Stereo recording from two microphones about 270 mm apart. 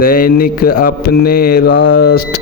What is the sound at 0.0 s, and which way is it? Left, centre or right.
Mantra, left.